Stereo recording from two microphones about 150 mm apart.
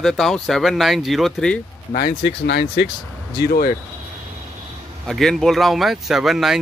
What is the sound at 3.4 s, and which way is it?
Speech, 85° left.